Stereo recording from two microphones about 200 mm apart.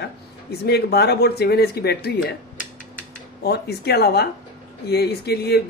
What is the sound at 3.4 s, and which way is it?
Speech, 50° left (ahead or behind).